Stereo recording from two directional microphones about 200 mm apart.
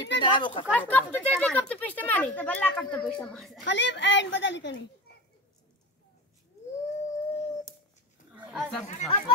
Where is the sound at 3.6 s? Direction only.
60° left (ahead or behind).